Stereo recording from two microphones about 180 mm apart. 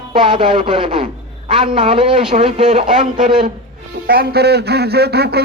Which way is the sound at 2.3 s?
40° right (ahead or behind).